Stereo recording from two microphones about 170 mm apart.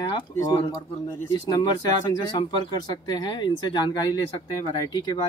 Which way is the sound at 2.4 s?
25° left (ahead or behind).